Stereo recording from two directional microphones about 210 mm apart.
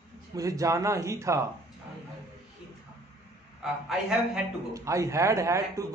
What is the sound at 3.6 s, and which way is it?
Speech, 5° right (ahead or behind).